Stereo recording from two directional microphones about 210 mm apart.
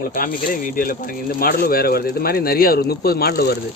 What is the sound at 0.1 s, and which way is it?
Speech, 45° left (ahead or behind).